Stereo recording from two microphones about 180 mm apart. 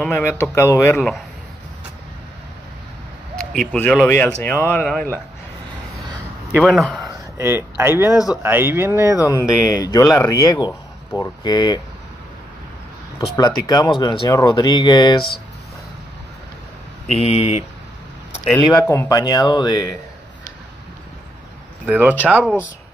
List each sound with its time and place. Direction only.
0.0 s speech: 5° left (ahead or behind)
0.6 s speech: 15° left (ahead or behind)
3.3 s speech: 5° left (ahead or behind)
6.6 s speech: 5° left (ahead or behind)
7.1 s speech: 15° right (ahead or behind)
8.1 s speech: 20° left (ahead or behind)
8.4 s speech: 10° right (ahead or behind)
9.7 s speech: 20° left (ahead or behind)
13.4 s speech: 20° left (ahead or behind)
17.2 s speech: 35° left (ahead or behind)
18.4 s speech: centre (ahead or behind)
18.9 s speech: 20° left (ahead or behind)
21.8 s speech: 10° right (ahead or behind)